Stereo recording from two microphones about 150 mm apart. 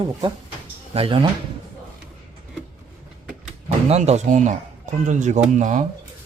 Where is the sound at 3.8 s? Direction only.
45° right (ahead or behind).